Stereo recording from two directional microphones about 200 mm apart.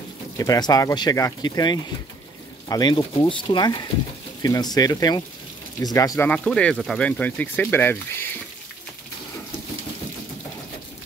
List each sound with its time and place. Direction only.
0.4 s speech: 20° left (ahead or behind)